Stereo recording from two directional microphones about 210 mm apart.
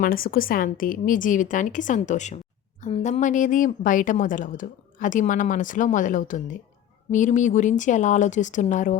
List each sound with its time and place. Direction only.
0.0 s a woman's voice: 45° left (ahead or behind)